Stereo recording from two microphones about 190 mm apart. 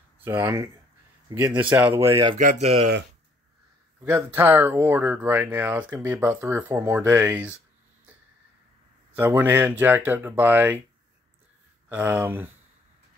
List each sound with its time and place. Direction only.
0.2 s speech: 10° right (ahead or behind)
2.3 s speech: 35° right (ahead or behind)
4.0 s speech: 10° right (ahead or behind)
9.1 s speech: 10° right (ahead or behind)
11.9 s speech: 10° right (ahead or behind)